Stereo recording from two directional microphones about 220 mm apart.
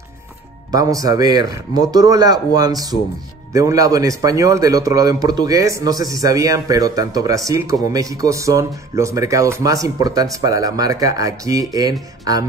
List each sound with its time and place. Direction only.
0.7 s a man's voice: 15° right (ahead or behind)